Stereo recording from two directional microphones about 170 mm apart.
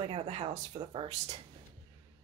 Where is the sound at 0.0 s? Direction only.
35° right (ahead or behind).